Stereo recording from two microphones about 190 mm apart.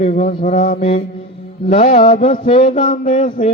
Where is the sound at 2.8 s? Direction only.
40° left (ahead or behind).